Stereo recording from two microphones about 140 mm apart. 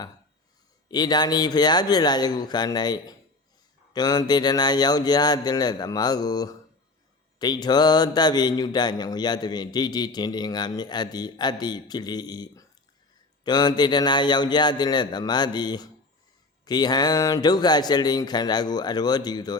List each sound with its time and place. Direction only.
0.9 s mantra: 30° left (ahead or behind)
13.4 s speech: 30° left (ahead or behind)
16.6 s mantra: 30° left (ahead or behind)